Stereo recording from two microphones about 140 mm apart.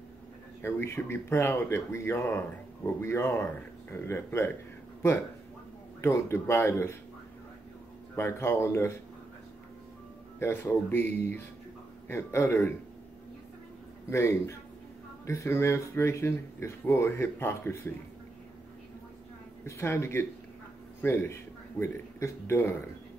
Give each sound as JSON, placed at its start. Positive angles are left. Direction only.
{"t": 0.6, "sound": "speech", "side_deg": 15}
{"t": 5.9, "sound": "speech", "side_deg": 20}
{"t": 8.2, "sound": "speech", "side_deg": 20}
{"t": 10.4, "sound": "speech", "side_deg": 15}
{"t": 14.1, "sound": "speech", "side_deg": 20}
{"t": 19.6, "sound": "a man's voice", "side_deg": 20}